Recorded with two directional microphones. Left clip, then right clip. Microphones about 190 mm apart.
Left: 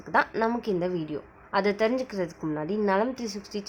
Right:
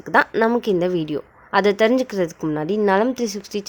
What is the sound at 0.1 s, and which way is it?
A woman's voice, 40° right (ahead or behind).